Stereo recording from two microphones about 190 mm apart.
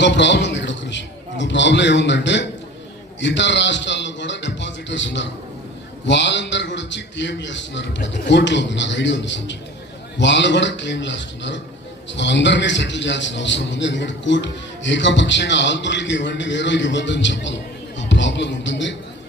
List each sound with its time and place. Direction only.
0.0 s a man's voice: 70° left (ahead or behind)